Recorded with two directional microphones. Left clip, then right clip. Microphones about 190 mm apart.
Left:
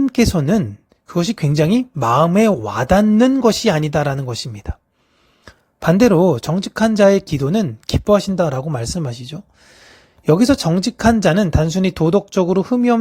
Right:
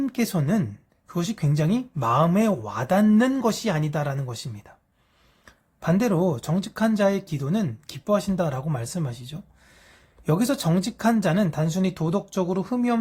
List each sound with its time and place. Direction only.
0.0 s speech: 40° left (ahead or behind)